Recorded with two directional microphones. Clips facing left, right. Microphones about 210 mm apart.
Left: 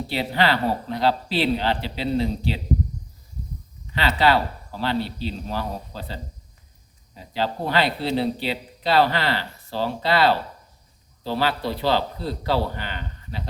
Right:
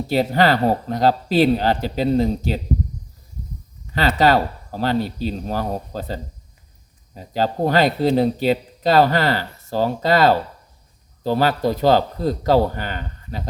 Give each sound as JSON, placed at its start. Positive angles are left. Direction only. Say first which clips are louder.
{"t": 0.1, "sound": "speech", "louder": "right 6 dB", "side_deg": -45}
{"t": 3.9, "sound": "speech", "louder": "right 4 dB", "side_deg": -45}